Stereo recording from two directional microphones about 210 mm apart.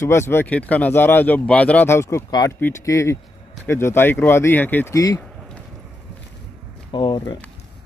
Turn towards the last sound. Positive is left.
turn(degrees=20)  # may be behind; listen again after turning